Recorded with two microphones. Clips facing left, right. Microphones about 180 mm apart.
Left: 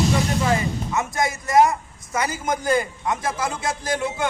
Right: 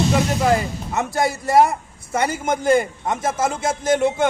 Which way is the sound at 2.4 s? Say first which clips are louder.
Right 4 dB; 25° right (ahead or behind).